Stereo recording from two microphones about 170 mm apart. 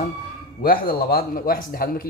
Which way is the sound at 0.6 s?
60° left (ahead or behind).